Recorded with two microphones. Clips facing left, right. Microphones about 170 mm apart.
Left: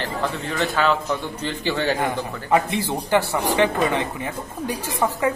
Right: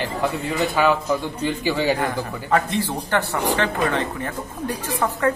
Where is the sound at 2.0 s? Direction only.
15° left (ahead or behind).